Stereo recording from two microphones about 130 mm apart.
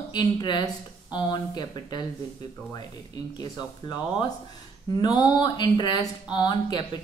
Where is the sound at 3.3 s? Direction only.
30° left (ahead or behind).